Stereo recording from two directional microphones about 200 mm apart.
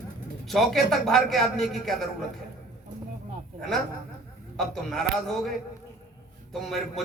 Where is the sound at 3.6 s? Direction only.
Centre (ahead or behind).